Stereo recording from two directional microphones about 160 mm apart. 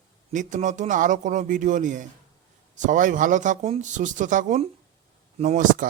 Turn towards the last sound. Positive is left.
turn(degrees=-55)  # may be behind; listen again after turning